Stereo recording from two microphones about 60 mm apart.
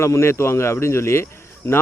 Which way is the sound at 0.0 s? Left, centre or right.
Left.